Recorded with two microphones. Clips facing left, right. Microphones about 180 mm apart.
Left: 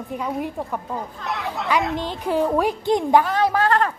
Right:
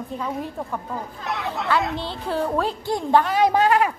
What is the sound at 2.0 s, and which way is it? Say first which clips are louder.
A woman's voice: left 4 dB; 15° left (ahead or behind).